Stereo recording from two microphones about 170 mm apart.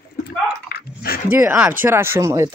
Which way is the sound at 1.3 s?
10° right (ahead or behind).